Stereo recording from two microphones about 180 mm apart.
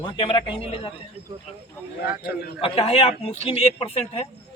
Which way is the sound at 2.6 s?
30° left (ahead or behind).